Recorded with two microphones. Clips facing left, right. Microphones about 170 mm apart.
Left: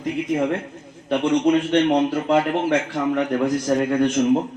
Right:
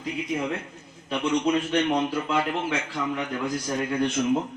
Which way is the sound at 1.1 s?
60° left (ahead or behind).